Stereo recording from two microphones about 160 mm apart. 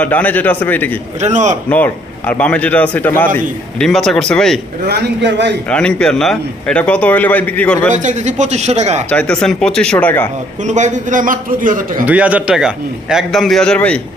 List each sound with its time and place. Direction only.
0.0 s a man's voice: 10° left (ahead or behind)
1.2 s speech: 50° right (ahead or behind)
1.7 s a man's voice: 10° left (ahead or behind)
4.9 s a man's voice: 90° right
5.6 s a man's voice: 5° left (ahead or behind)
7.9 s speech: 50° right (ahead or behind)
9.0 s a man's voice: 5° left (ahead or behind)
10.7 s a man's voice: 50° right (ahead or behind)
12.0 s a man's voice: 10° right (ahead or behind); by 14.0 s 10° left (ahead or behind)